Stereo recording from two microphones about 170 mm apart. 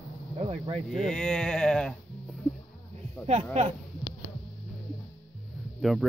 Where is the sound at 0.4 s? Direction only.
35° right (ahead or behind).